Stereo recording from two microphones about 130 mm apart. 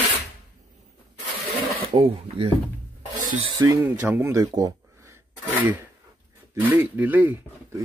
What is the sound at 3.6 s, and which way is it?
Speech, 20° right (ahead or behind).